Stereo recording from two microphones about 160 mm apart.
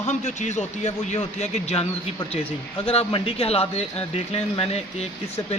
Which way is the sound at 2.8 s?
35° left (ahead or behind).